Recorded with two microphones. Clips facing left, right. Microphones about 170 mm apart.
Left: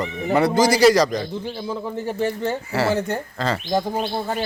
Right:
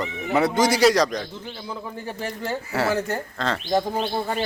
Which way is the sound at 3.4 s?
Centre (ahead or behind).